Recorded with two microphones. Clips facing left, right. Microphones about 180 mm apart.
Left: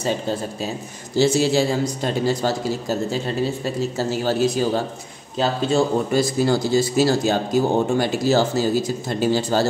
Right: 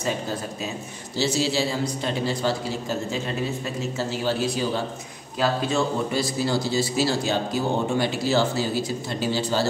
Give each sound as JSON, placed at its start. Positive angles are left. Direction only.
{"t": 1.1, "sound": "a man's voice", "side_deg": 50}
{"t": 6.1, "sound": "speech", "side_deg": 50}